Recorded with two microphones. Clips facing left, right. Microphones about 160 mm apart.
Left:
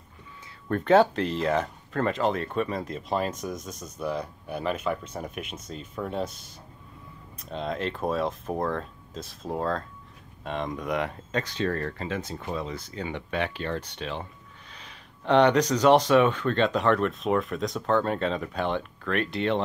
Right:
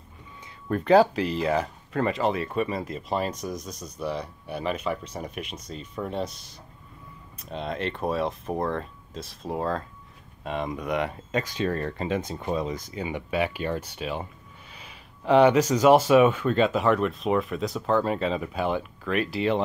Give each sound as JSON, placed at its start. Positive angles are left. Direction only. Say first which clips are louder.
{"t": 0.7, "sound": "speech", "louder": "right 1 dB", "side_deg": 0}
{"t": 7.3, "sound": "speech", "louder": "even", "side_deg": 0}